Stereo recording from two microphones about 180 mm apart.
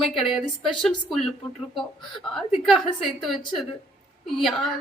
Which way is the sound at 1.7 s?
Centre (ahead or behind).